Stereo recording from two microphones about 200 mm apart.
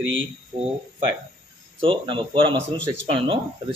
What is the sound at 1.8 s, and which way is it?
A man's voice, 25° right (ahead or behind).